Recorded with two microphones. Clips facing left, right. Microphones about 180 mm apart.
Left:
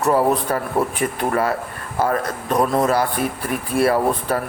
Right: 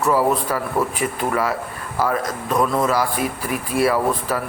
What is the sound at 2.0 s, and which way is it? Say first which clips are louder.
A man's voice: left 1 dB; 35° left (ahead or behind).